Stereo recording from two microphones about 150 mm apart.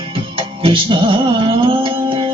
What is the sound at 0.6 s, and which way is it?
Music, 35° right (ahead or behind).